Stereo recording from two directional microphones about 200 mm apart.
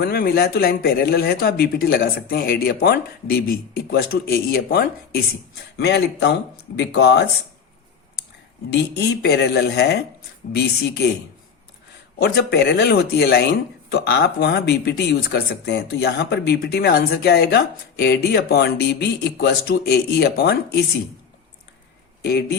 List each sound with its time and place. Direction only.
0.0 s speech: 50° left (ahead or behind)
8.7 s speech: 55° left (ahead or behind)
12.2 s speech: 50° left (ahead or behind)
22.2 s speech: 55° left (ahead or behind)